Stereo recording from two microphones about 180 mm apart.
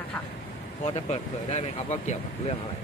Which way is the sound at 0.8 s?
35° left (ahead or behind).